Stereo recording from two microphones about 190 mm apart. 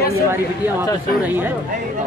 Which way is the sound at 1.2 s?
10° right (ahead or behind).